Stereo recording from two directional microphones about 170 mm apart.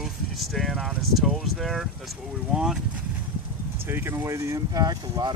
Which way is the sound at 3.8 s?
15° right (ahead or behind).